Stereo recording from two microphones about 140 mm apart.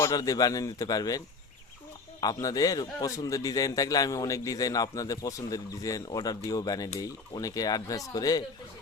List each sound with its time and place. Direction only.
0.0 s a man's voice: 25° left (ahead or behind)
2.2 s a man's voice: 25° left (ahead or behind)